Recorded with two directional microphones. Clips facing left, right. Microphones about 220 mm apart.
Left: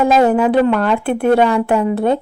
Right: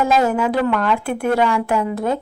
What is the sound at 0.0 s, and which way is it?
Speech, 35° left (ahead or behind).